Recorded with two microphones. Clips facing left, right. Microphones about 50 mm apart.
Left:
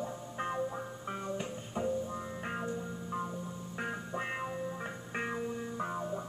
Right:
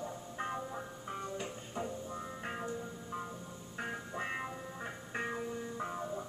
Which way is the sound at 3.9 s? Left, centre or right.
Centre.